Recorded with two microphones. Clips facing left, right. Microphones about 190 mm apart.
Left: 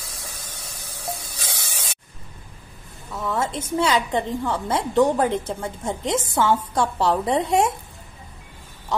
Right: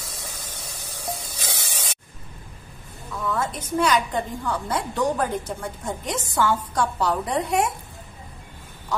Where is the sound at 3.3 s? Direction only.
25° left (ahead or behind).